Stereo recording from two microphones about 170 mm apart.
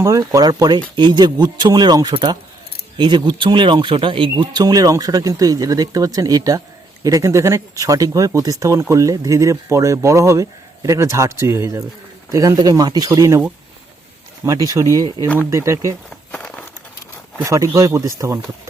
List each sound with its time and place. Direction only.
0.0 s speech: 20° right (ahead or behind)
14.4 s speech: 20° right (ahead or behind)
16.3 s a sound: 5° left (ahead or behind)
17.3 s speech: 20° right (ahead or behind)